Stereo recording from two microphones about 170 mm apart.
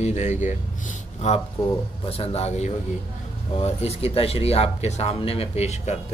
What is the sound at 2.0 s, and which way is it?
Speech, 35° left (ahead or behind).